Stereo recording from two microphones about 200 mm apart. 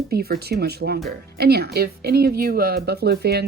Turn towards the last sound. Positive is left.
turn(degrees=-55)  # may be behind; listen again after turning